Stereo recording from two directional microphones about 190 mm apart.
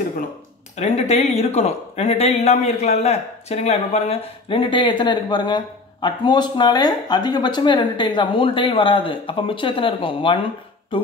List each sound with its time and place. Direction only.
0.7 s speech: 35° left (ahead or behind)